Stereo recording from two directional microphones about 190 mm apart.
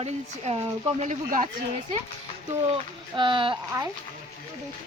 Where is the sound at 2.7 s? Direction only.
25° right (ahead or behind).